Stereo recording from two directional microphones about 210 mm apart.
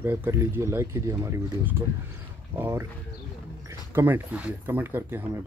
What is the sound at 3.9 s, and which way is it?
Speech, 10° right (ahead or behind).